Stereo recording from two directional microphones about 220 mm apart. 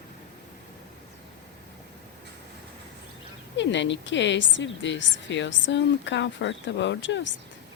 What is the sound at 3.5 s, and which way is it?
A woman's voice, 55° left (ahead or behind).